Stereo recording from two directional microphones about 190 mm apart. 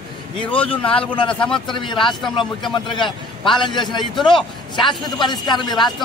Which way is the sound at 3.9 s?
Centre (ahead or behind).